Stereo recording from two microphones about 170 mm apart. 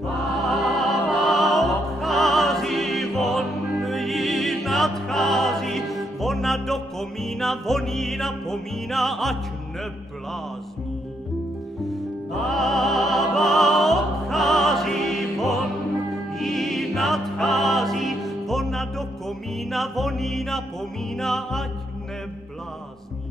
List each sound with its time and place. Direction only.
0.5 s music: centre (ahead or behind)
11.9 s music: centre (ahead or behind)